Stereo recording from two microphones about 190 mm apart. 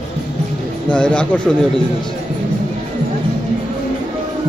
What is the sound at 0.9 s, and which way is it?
Speech, 5° left (ahead or behind).